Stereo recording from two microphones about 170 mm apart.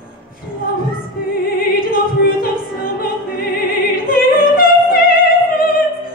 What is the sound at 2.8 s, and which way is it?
Opera, 60° left (ahead or behind).